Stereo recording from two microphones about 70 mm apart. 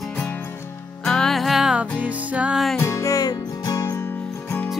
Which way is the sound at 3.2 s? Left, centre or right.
Left.